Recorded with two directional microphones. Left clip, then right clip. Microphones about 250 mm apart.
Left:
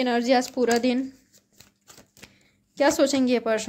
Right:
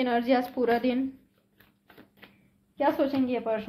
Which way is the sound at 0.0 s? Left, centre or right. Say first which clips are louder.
Left 3 dB; left.